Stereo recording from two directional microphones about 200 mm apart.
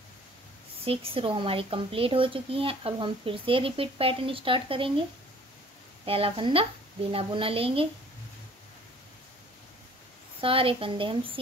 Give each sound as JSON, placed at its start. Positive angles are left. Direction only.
{"t": 0.8, "sound": "a woman's voice", "side_deg": -25}
{"t": 6.0, "sound": "a woman's voice", "side_deg": -30}
{"t": 10.4, "sound": "a woman's voice", "side_deg": -25}